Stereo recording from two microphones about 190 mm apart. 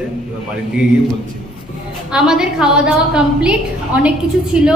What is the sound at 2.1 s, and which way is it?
A woman's voice, 5° right (ahead or behind).